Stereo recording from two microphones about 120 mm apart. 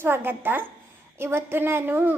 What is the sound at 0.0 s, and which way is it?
A child's voice, 20° right (ahead or behind).